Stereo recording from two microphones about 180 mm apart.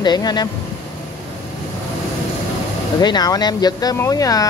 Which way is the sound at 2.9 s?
25° left (ahead or behind).